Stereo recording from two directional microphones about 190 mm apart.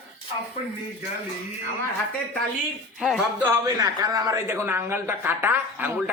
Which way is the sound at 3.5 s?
20° right (ahead or behind).